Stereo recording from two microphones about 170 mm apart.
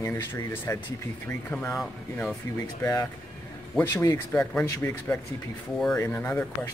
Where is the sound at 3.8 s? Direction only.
15° left (ahead or behind).